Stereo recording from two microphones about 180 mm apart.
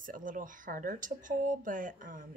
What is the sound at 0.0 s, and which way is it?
Speech, 50° right (ahead or behind).